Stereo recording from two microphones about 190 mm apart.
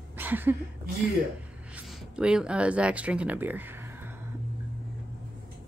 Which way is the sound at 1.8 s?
5° right (ahead or behind).